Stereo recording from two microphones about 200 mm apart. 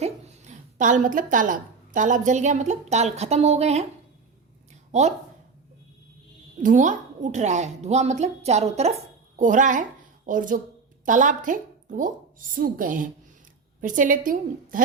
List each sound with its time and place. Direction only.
0.0 s a woman's voice: 35° right (ahead or behind)
4.9 s speech: 35° right (ahead or behind)
6.6 s a woman's voice: 40° right (ahead or behind)